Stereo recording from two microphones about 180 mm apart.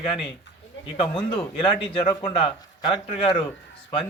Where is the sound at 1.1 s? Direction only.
30° left (ahead or behind).